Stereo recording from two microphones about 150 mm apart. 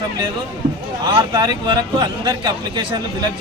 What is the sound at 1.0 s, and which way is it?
Speech, 25° right (ahead or behind).